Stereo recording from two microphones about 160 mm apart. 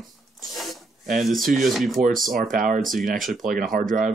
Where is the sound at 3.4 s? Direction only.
60° right (ahead or behind).